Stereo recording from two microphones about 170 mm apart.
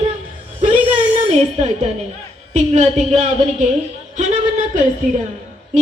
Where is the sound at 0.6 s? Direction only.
40° right (ahead or behind).